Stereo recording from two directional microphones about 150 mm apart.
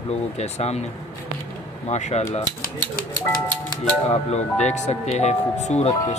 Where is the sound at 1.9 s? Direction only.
45° left (ahead or behind).